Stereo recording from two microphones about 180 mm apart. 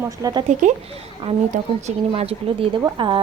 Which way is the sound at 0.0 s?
20° right (ahead or behind).